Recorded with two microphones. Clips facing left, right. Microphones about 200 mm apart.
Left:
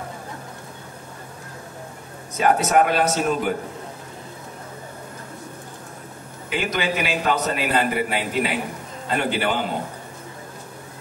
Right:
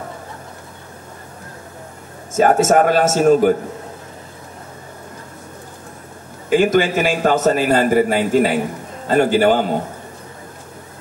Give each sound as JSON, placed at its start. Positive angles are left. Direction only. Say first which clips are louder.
{"t": 2.3, "sound": "a man's voice", "louder": "right 5 dB", "side_deg": -45}
{"t": 6.5, "sound": "a man's voice", "louder": "right 10 dB", "side_deg": -45}